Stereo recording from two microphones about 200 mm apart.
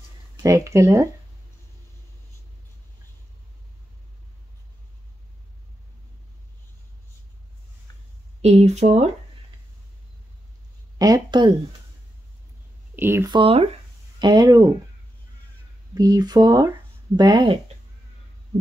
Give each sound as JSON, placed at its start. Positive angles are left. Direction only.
{"t": 0.4, "sound": "speech", "side_deg": -15}
{"t": 8.4, "sound": "speech", "side_deg": -30}
{"t": 11.0, "sound": "speech", "side_deg": -20}
{"t": 12.9, "sound": "speech", "side_deg": -10}
{"t": 15.9, "sound": "speech", "side_deg": -20}